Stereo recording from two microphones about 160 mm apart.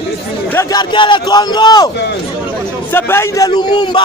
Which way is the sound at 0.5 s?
15° left (ahead or behind).